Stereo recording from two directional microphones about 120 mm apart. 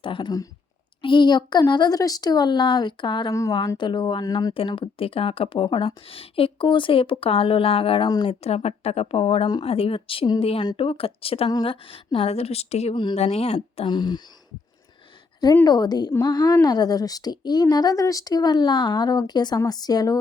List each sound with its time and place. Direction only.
0.0 s a woman's voice: 45° left (ahead or behind)
4.5 s speech: 45° left (ahead or behind)
8.0 s a woman's voice: 40° left (ahead or behind); by 12.9 s 60° left (ahead or behind)
12.9 s a woman's voice: 40° left (ahead or behind)
13.1 s a woman's voice: 60° left (ahead or behind)
13.8 s a woman's voice: 40° left (ahead or behind)
15.6 s a woman's voice: 35° left (ahead or behind)